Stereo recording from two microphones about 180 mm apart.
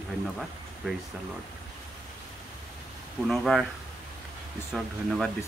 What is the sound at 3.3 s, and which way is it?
Speech, centre (ahead or behind).